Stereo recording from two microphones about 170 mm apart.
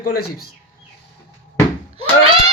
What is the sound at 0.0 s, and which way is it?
Speech, 65° left (ahead or behind).